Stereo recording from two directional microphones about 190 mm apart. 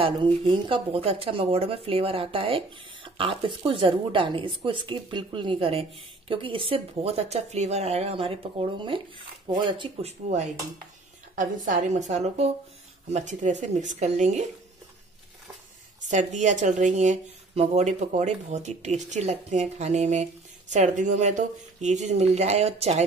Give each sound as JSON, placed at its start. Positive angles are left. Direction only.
{"t": 0.0, "sound": "speech", "side_deg": -25}
{"t": 11.3, "sound": "speech", "side_deg": -45}
{"t": 16.0, "sound": "speech", "side_deg": -40}